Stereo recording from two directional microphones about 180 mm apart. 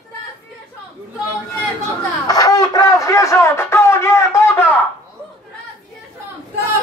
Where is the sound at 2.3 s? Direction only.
20° left (ahead or behind).